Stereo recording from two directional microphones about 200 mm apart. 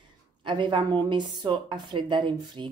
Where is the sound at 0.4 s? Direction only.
25° right (ahead or behind).